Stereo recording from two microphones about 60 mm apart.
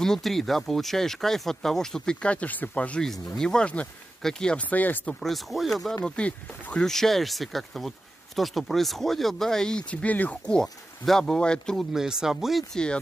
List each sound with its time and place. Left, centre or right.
0.0 s speech: centre
4.6 s speech: left
5.2 s speech: centre
6.0 s speech: centre
6.9 s speech: centre; by 10.5 s left
10.5 s speech: centre
11.7 s speech: centre
12.7 s speech: centre